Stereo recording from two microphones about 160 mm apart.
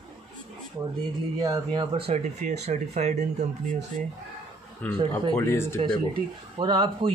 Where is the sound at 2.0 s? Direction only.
45° right (ahead or behind).